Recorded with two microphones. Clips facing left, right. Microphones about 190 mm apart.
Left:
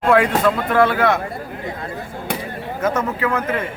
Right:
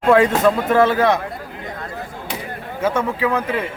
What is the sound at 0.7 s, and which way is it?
Speech, 20° right (ahead or behind).